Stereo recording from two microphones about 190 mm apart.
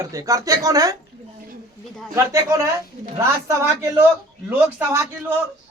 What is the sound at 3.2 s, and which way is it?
A woman's voice, 15° right (ahead or behind).